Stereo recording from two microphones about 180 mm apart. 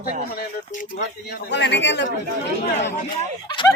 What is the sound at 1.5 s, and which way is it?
Speech, 75° left (ahead or behind).